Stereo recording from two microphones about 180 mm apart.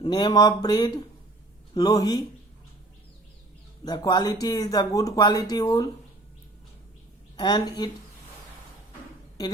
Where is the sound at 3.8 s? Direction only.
20° left (ahead or behind).